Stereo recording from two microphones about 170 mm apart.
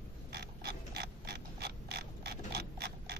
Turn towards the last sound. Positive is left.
turn(degrees=-75)  # may be behind; listen again after turning